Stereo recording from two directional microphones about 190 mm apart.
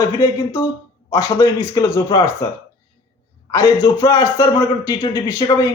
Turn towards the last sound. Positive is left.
turn(degrees=15)  # may be behind; listen again after turning